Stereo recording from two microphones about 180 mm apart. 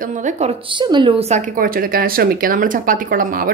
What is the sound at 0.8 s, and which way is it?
Speech, 25° right (ahead or behind).